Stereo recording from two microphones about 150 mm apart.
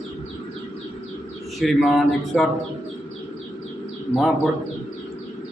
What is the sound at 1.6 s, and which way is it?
Speech, centre (ahead or behind).